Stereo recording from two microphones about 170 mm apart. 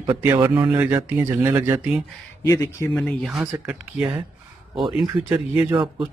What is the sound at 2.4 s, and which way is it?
Speech, 15° left (ahead or behind).